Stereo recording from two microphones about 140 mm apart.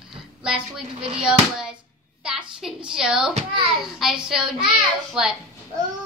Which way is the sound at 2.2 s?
5° right (ahead or behind).